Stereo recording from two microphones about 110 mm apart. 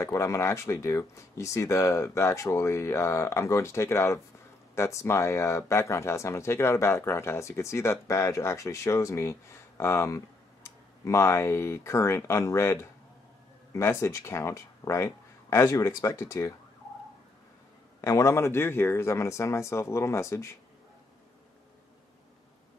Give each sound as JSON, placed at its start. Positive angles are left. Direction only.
{"t": 0.0, "sound": "speech", "side_deg": 25}
{"t": 18.0, "sound": "speech", "side_deg": 30}